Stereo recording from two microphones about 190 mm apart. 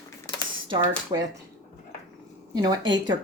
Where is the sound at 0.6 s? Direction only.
20° right (ahead or behind).